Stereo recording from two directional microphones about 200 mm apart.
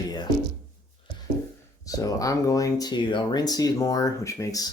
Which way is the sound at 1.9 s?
15° left (ahead or behind).